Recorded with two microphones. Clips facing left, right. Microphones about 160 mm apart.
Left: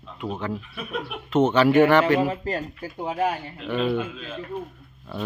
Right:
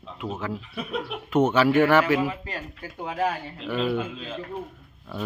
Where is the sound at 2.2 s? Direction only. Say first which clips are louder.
Left 4 dB; 40° left (ahead or behind).